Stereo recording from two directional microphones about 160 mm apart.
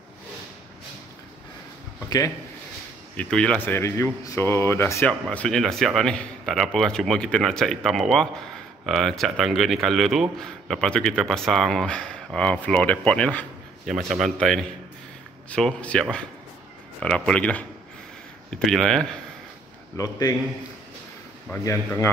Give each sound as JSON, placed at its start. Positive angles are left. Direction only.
{"t": 2.0, "sound": "speech", "side_deg": 20}
{"t": 3.2, "sound": "speech", "side_deg": 5}
{"t": 5.3, "sound": "speech", "side_deg": 5}
{"t": 20.0, "sound": "a man's voice", "side_deg": 25}
{"t": 21.5, "sound": "speech", "side_deg": 15}